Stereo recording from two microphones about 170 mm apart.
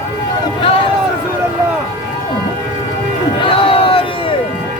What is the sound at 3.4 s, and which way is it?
Crowd, 30° left (ahead or behind).